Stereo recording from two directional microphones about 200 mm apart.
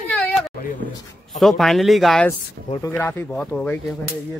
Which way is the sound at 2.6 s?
25° left (ahead or behind).